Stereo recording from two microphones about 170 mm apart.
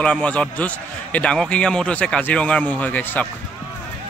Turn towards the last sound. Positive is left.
turn(degrees=10)  # may be behind; listen again after turning